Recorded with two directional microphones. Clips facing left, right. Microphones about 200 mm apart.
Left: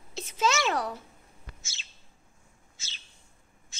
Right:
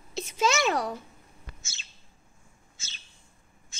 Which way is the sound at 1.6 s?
50° right (ahead or behind).